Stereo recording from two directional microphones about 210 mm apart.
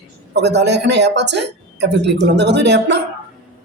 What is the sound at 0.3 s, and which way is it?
Speech, 55° right (ahead or behind).